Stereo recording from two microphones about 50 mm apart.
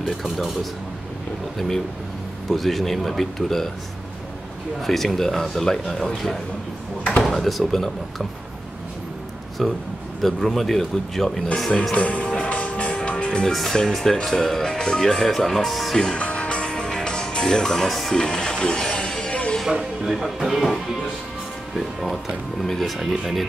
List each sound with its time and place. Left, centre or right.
0.0 s a man's voice: centre
2.5 s a man's voice: centre
4.8 s a man's voice: centre
9.6 s a man's voice: centre
11.9 s speech: left
12.4 s music: left
13.5 s speech: centre
16.0 s music: centre
18.2 s music: centre
19.7 s a man's voice: centre